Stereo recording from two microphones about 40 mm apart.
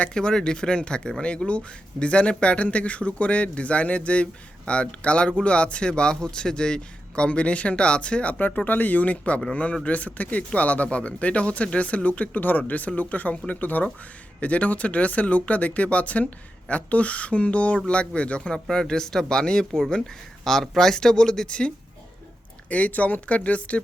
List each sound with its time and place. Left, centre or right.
0.0 s speech: left
8.4 s speech: left; by 21.4 s centre
21.4 s speech: left
22.7 s speech: left